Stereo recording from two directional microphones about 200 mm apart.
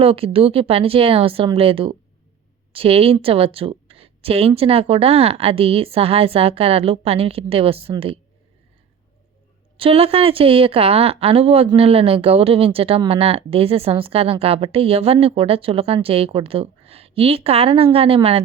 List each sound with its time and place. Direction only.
0.0 s speech: 30° right (ahead or behind)
9.7 s speech: 30° right (ahead or behind)